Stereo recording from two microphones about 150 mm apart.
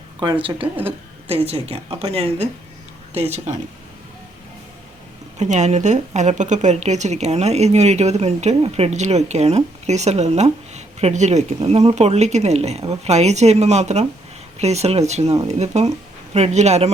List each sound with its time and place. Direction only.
1.3 s a woman's voice: 40° right (ahead or behind)
5.4 s a woman's voice: 50° right (ahead or behind)